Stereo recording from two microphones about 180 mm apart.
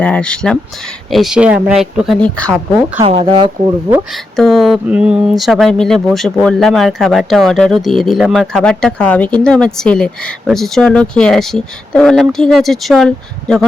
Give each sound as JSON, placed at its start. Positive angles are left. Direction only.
{"t": 0.0, "sound": "speech", "side_deg": 5}
{"t": 3.0, "sound": "speech", "side_deg": -30}
{"t": 4.1, "sound": "speech", "side_deg": 0}